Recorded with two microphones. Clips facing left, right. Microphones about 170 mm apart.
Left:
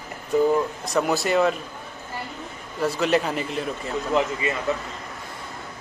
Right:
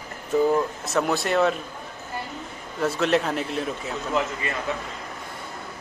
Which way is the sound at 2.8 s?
Centre (ahead or behind).